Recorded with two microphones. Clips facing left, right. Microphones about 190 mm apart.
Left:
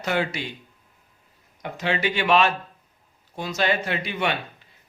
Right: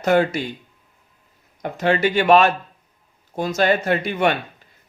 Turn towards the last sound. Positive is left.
turn(degrees=-45)  # may be behind; listen again after turning